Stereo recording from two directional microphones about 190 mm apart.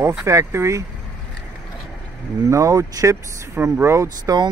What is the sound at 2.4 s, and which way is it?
Speech, 15° right (ahead or behind).